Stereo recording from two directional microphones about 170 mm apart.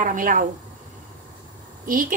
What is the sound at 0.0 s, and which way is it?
Speech, 50° right (ahead or behind).